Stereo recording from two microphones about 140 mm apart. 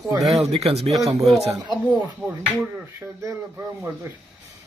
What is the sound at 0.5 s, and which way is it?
Speech, 45° right (ahead or behind).